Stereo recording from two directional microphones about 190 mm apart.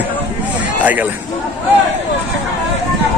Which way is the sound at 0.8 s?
10° right (ahead or behind).